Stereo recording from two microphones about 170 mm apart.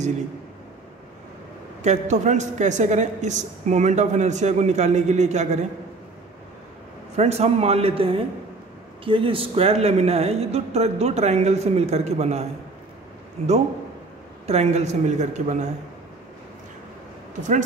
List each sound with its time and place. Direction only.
1.8 s a woman's voice: 45° right (ahead or behind)
7.2 s speech: 40° right (ahead or behind)
14.4 s speech: 40° right (ahead or behind)